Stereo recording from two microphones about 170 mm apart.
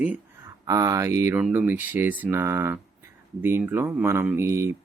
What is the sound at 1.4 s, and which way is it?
Speech, 5° right (ahead or behind).